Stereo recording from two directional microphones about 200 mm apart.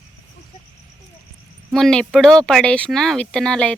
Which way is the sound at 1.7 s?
Centre (ahead or behind).